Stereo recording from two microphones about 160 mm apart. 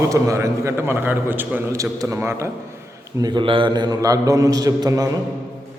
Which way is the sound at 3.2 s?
30° right (ahead or behind).